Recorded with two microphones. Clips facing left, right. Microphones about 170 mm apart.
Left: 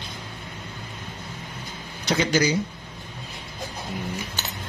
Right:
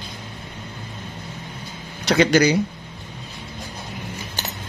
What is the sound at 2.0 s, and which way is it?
Speech, 70° right (ahead or behind).